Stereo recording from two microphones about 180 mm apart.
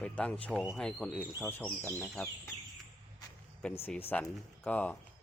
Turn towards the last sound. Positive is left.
turn(degrees=10)  # may be behind; listen again after turning